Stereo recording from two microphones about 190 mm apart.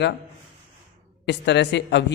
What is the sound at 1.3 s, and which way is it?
Speech, 65° left (ahead or behind).